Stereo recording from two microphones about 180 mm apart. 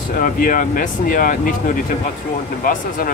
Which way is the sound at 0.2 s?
50° left (ahead or behind).